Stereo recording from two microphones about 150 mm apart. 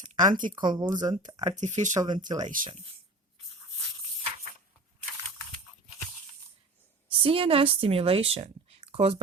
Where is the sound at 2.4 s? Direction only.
65° right (ahead or behind).